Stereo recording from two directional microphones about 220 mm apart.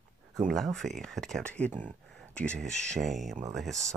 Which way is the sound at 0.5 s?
Centre (ahead or behind).